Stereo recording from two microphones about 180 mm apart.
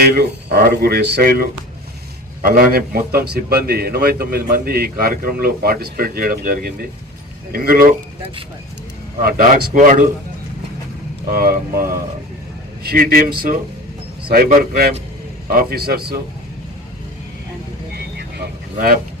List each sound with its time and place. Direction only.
0.1 s a man's voice: 65° right (ahead or behind)
9.2 s speech: 50° right (ahead or behind)
11.3 s a man's voice: 55° right (ahead or behind)
18.2 s a sound: 60° right (ahead or behind)